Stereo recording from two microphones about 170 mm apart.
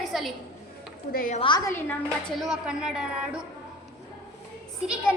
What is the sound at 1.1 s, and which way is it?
Speech, 50° left (ahead or behind).